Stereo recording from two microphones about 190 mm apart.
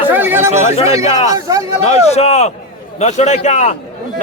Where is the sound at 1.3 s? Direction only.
20° right (ahead or behind).